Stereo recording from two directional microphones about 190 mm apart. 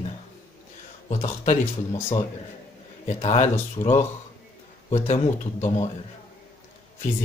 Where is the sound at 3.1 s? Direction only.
35° left (ahead or behind).